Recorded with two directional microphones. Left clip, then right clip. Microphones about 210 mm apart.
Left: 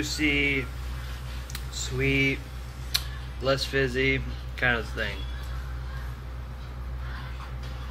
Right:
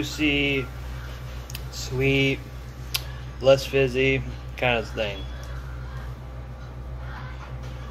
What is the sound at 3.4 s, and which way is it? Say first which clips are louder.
Speech: right 7 dB; 10° left (ahead or behind).